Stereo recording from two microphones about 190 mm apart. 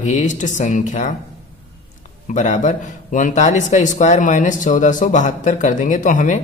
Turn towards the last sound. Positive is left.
turn(degrees=40)  # may be behind; listen again after turning